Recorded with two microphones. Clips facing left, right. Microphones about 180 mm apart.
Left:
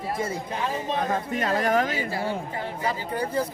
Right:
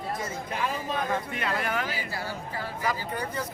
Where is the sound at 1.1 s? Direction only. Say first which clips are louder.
Left 4 dB; 40° left (ahead or behind).